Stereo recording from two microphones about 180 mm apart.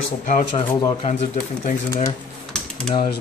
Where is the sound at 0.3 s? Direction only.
45° left (ahead or behind).